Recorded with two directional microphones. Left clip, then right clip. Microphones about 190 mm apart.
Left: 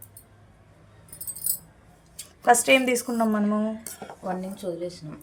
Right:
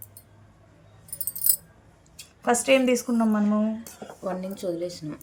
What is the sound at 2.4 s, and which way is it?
Speech, 40° left (ahead or behind).